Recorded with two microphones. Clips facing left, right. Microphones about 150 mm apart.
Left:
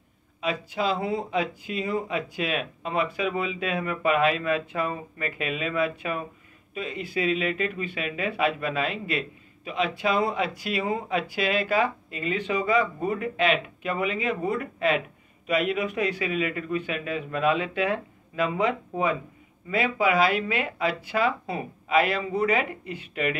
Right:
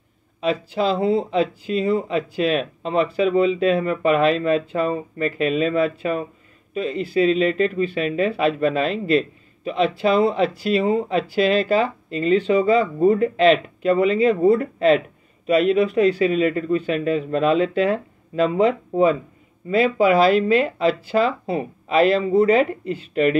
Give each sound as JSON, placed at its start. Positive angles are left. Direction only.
{"t": 0.4, "sound": "speech", "side_deg": -30}